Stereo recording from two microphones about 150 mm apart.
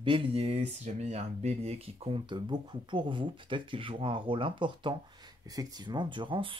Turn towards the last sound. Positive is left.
turn(degrees=-35)  # may be behind; listen again after turning